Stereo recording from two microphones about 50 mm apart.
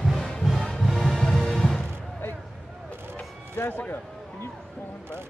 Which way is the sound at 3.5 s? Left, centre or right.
Left.